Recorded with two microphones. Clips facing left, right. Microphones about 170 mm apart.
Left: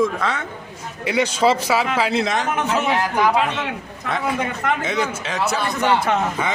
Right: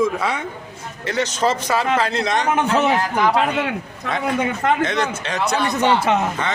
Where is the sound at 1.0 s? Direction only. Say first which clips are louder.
Left 2 dB; 10° left (ahead or behind).